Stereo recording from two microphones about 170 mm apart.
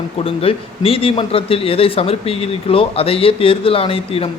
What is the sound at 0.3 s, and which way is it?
Speech, 35° left (ahead or behind).